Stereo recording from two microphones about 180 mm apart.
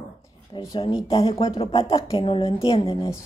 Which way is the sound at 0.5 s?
20° left (ahead or behind).